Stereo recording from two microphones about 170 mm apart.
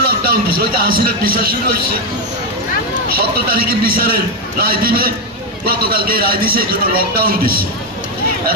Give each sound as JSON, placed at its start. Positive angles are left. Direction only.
{"t": 0.6, "sound": "a man's voice", "side_deg": -60}
{"t": 3.1, "sound": "a man's voice", "side_deg": -60}